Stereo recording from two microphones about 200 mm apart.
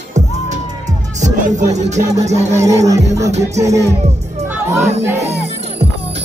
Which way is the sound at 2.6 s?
15° right (ahead or behind).